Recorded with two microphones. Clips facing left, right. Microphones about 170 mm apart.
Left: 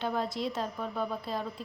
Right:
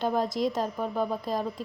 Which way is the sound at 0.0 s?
40° right (ahead or behind).